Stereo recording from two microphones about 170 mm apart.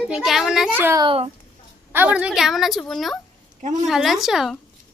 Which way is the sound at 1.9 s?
10° right (ahead or behind).